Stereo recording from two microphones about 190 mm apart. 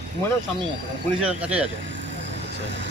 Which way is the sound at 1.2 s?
5° right (ahead or behind).